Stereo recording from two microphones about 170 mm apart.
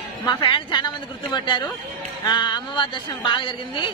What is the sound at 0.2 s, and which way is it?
Speech, 25° left (ahead or behind).